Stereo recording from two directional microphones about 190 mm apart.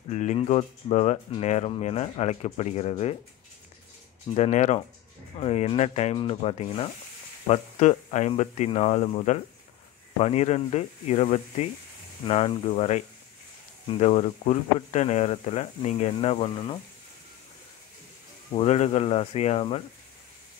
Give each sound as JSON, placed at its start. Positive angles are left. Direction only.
{"t": 0.1, "sound": "speech", "side_deg": 35}
{"t": 4.3, "sound": "speech", "side_deg": 35}
{"t": 18.5, "sound": "speech", "side_deg": 35}